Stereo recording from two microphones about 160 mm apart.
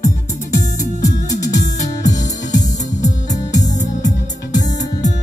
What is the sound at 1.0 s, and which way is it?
Music, 20° left (ahead or behind).